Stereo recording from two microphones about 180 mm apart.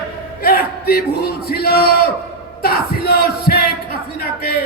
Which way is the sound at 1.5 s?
60° left (ahead or behind).